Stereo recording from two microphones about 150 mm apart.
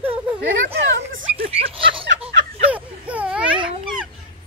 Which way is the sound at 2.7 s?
10° right (ahead or behind).